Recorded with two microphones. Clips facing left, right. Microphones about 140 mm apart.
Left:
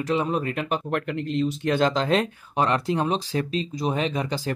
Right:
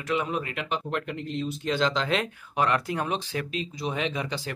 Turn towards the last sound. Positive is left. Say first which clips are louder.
# left 4 dB
turn(degrees=40)  # may be behind; listen again after turning